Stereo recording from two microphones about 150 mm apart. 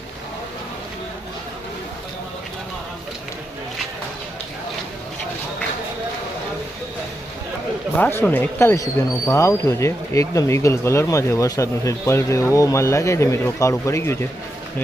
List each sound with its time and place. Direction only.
7.9 s speech: 10° left (ahead or behind)